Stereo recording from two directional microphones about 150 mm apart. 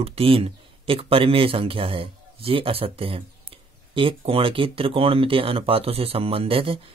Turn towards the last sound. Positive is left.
turn(degrees=-40)  # may be behind; listen again after turning